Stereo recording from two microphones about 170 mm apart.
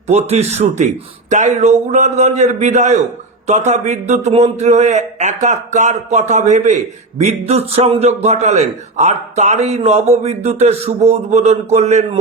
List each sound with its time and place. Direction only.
0.1 s a man's voice: 40° right (ahead or behind)